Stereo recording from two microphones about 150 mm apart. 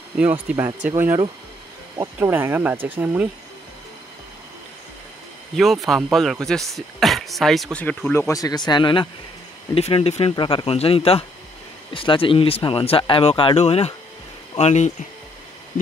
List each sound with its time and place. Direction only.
0.1 s speech: 10° right (ahead or behind)
2.1 s speech: 15° right (ahead or behind)
5.6 s speech: centre (ahead or behind); by 14.9 s 50° left (ahead or behind)